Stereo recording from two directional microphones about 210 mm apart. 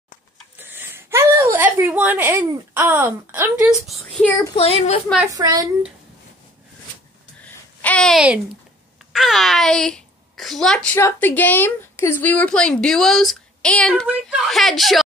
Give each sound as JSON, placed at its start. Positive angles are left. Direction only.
{"t": 0.6, "sound": "a sound", "side_deg": -10}
{"t": 3.8, "sound": "a child's voice", "side_deg": 0}
{"t": 4.6, "sound": "a woman's voice", "side_deg": 30}
{"t": 5.3, "sound": "speech", "side_deg": -15}
{"t": 7.4, "sound": "babbling", "side_deg": 5}
{"t": 9.1, "sound": "a child's voice", "side_deg": 0}